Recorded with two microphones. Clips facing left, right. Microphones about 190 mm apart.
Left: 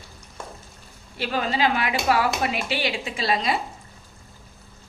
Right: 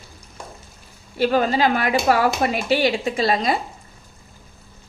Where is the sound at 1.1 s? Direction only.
45° right (ahead or behind).